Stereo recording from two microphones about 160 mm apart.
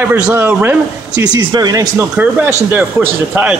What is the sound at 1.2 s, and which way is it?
Speech, 25° right (ahead or behind).